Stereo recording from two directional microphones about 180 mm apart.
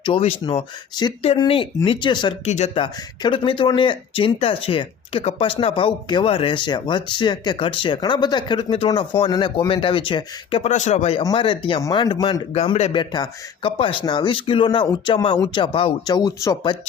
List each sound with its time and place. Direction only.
0.0 s speech: 30° left (ahead or behind)
2.5 s speech: 40° left (ahead or behind)
2.8 s speech: 25° left (ahead or behind)
11.2 s speech: 25° left (ahead or behind)